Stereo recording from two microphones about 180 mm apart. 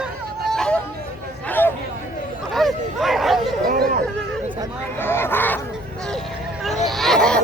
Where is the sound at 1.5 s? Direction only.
10° left (ahead or behind).